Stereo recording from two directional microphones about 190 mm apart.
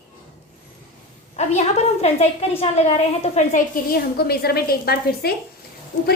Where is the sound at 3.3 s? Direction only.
45° left (ahead or behind).